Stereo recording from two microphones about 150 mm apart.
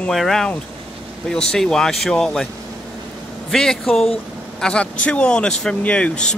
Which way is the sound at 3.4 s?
Centre (ahead or behind).